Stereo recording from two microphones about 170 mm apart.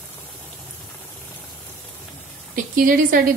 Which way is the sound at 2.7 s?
55° right (ahead or behind).